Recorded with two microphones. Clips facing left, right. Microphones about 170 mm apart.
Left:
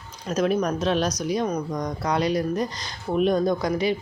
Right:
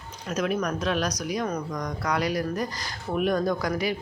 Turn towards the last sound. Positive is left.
turn(degrees=25)  # may be behind; listen again after turning